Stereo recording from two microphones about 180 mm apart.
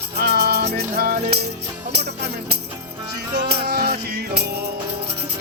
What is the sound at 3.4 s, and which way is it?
Music, 60° right (ahead or behind).